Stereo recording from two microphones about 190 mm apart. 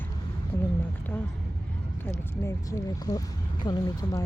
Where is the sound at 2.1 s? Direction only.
15° left (ahead or behind).